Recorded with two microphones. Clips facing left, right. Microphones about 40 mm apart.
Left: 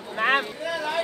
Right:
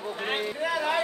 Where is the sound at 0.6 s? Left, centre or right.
Right.